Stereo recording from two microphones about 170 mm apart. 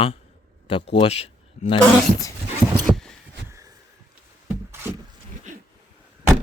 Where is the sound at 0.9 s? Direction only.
35° left (ahead or behind).